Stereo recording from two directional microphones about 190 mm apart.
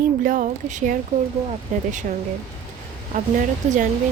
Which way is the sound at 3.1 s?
45° right (ahead or behind).